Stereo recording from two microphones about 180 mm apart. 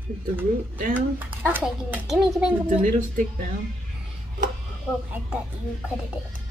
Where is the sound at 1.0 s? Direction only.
10° right (ahead or behind).